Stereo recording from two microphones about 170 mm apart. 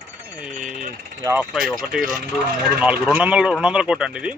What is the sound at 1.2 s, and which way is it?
Speech, 15° right (ahead or behind).